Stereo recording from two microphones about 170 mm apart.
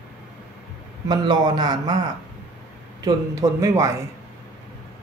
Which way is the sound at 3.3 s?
20° right (ahead or behind).